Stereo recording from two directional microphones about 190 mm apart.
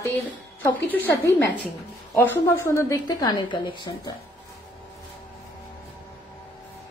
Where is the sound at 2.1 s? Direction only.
15° left (ahead or behind).